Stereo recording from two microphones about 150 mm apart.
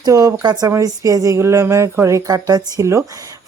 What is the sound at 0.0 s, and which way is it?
Speech, 20° right (ahead or behind).